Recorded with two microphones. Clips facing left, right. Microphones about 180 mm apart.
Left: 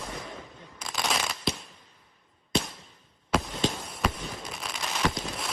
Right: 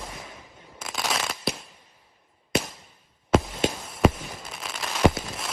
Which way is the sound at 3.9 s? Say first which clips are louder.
Right 9 dB; 25° right (ahead or behind).